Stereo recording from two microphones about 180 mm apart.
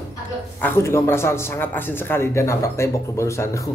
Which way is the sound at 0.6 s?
15° left (ahead or behind).